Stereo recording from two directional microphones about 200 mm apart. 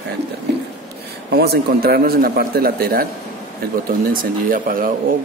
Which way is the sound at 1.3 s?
50° right (ahead or behind).